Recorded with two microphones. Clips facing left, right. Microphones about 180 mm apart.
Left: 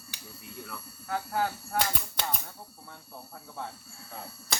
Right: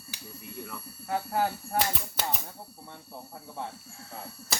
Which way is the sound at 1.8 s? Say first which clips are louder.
Right 1 dB; 5° right (ahead or behind).